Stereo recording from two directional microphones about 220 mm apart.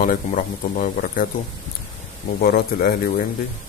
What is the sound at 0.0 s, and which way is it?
Speech, 40° left (ahead or behind).